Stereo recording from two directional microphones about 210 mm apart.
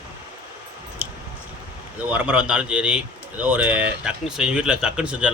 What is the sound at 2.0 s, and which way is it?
Speech, 5° right (ahead or behind).